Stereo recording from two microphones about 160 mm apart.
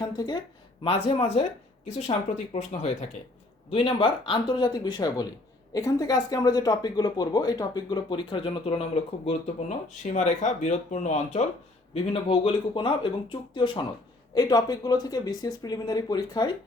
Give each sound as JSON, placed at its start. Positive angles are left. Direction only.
{"t": 0.0, "sound": "speech", "side_deg": 25}
{"t": 12.1, "sound": "speech", "side_deg": 35}